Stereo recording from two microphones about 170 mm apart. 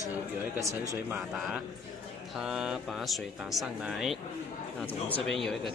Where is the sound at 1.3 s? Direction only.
Centre (ahead or behind).